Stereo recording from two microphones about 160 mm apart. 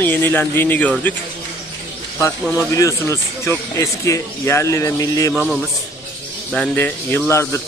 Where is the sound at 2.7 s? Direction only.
20° left (ahead or behind).